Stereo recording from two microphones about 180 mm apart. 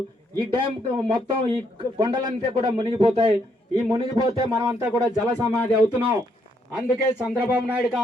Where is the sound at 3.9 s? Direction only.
20° right (ahead or behind).